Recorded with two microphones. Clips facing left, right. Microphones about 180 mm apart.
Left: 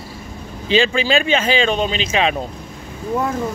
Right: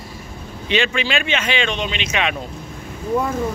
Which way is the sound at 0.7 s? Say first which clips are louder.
Left 4 dB; 35° left (ahead or behind).